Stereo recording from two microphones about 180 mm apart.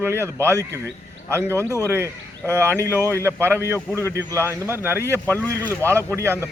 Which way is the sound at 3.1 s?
15° right (ahead or behind).